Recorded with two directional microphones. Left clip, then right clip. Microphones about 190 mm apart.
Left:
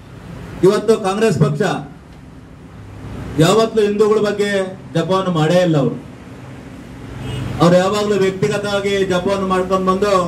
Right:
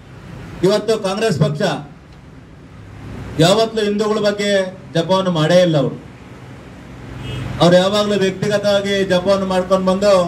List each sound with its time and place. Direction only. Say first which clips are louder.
0.6 s a man's voice: left 2 dB; 45° left (ahead or behind)
3.3 s a man's voice: left 1 dB; 45° left (ahead or behind)
7.5 s a man's voice: right 1 dB; 40° left (ahead or behind)